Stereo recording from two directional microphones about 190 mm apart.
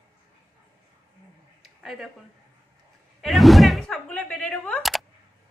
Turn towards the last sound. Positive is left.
turn(degrees=0)  # may be behind; listen again after turning